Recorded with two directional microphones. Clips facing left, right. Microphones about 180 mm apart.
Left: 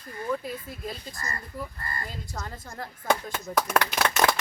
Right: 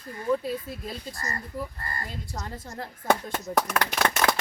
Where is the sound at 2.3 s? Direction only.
20° right (ahead or behind).